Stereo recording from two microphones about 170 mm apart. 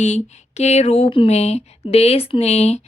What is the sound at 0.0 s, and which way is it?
Speech, 40° left (ahead or behind).